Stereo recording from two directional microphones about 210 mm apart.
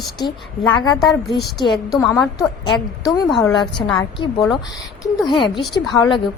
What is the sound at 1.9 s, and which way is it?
Speech, centre (ahead or behind).